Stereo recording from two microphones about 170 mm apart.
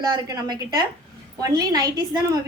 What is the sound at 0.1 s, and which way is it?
A woman's voice, 25° right (ahead or behind).